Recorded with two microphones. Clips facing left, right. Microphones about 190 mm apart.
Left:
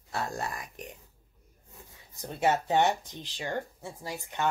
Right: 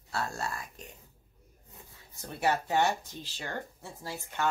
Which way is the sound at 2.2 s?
20° left (ahead or behind).